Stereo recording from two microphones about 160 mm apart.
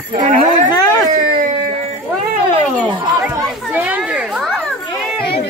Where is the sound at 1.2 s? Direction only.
55° right (ahead or behind).